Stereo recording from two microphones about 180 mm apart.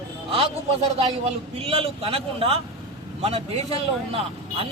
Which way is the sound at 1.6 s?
30° right (ahead or behind).